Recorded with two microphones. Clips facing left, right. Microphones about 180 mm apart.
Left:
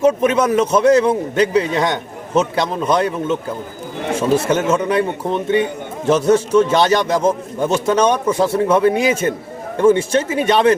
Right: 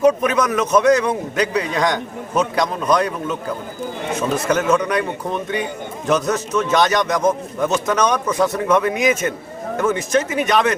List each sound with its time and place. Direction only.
0.0 s a man's voice: 25° left (ahead or behind)